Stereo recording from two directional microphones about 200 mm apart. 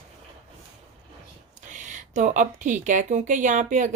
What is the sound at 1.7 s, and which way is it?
Speech, 40° right (ahead or behind).